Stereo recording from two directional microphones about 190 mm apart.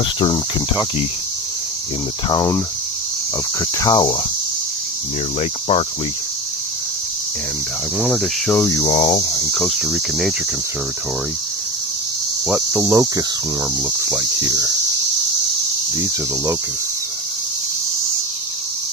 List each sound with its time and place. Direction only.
2.3 s speech: 10° left (ahead or behind)
3.8 s speech: 20° left (ahead or behind)
5.4 s speech: 30° left (ahead or behind)
7.9 s cricket: centre (ahead or behind)
8.7 s speech: 20° left (ahead or behind)
9.5 s cricket: centre (ahead or behind)
12.5 s cricket: 5° right (ahead or behind)
12.9 s cricket: 20° right (ahead or behind)
14.0 s speech: 10° right (ahead or behind)